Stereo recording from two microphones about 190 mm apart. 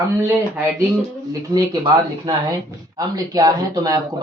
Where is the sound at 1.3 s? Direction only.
20° right (ahead or behind).